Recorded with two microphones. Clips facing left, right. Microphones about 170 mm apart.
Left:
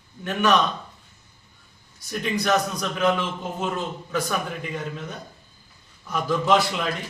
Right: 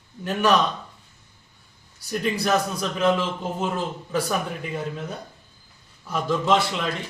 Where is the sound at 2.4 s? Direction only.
5° right (ahead or behind).